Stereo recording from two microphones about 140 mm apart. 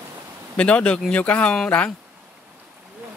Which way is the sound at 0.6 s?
10° left (ahead or behind).